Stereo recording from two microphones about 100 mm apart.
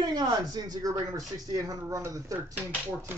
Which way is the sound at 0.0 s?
40° right (ahead or behind).